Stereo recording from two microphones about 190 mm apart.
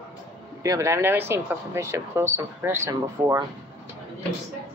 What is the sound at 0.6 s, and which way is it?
Speech, 15° right (ahead or behind).